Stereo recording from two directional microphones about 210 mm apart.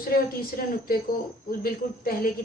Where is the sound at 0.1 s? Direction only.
45° left (ahead or behind).